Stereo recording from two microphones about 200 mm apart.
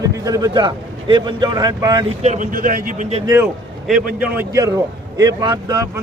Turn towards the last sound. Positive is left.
turn(degrees=-20)  # may be behind; listen again after turning